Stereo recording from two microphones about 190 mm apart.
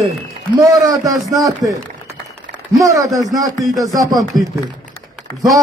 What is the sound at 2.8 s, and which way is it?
A man's voice, 15° right (ahead or behind).